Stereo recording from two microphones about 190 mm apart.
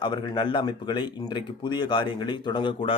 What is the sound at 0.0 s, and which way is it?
Speech, 25° left (ahead or behind).